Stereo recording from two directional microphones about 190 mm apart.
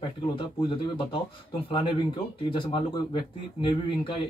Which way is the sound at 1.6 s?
30° left (ahead or behind).